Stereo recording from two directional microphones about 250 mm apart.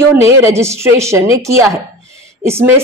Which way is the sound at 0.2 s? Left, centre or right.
Centre.